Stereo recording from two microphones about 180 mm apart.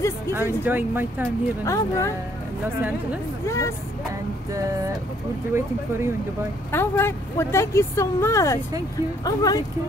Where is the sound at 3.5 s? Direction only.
15° left (ahead or behind).